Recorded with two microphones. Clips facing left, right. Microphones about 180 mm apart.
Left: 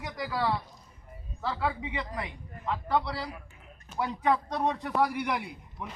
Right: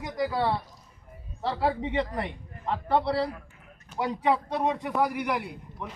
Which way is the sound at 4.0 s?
15° right (ahead or behind).